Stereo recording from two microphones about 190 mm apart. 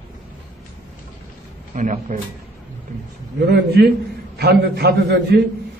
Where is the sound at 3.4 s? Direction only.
55° right (ahead or behind).